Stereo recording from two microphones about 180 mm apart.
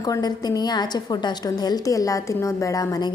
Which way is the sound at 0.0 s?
20° left (ahead or behind).